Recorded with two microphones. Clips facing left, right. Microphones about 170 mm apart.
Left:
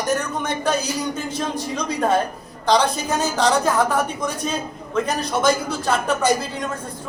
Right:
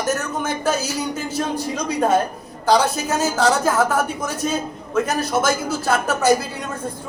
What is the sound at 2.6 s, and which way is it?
A man's voice, 5° right (ahead or behind).